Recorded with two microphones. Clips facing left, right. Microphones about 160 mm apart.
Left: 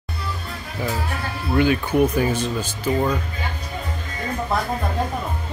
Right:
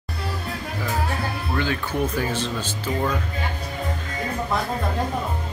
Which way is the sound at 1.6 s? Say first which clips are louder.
Left 8 dB; 15° left (ahead or behind).